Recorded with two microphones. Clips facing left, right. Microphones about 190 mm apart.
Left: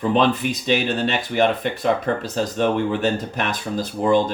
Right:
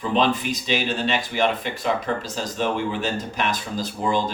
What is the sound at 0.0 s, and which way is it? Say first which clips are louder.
Speech: left 3 dB; 55° left (ahead or behind).